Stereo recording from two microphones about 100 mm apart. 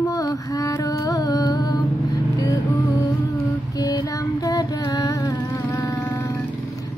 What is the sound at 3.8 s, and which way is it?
Music, 45° left (ahead or behind).